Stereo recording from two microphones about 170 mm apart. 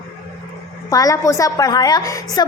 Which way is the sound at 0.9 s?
20° left (ahead or behind).